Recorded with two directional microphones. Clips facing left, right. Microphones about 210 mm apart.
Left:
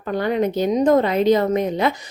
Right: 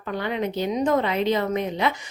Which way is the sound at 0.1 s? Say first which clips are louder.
Left 6 dB; 45° left (ahead or behind).